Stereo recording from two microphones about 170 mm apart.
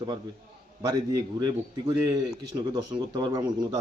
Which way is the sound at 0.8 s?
20° right (ahead or behind).